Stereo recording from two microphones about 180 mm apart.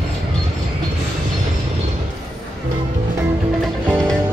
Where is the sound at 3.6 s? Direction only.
Centre (ahead or behind).